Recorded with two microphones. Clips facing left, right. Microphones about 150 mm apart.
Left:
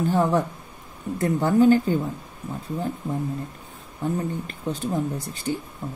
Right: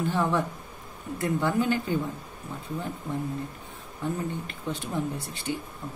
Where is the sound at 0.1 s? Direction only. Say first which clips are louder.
Left 5 dB; 40° left (ahead or behind).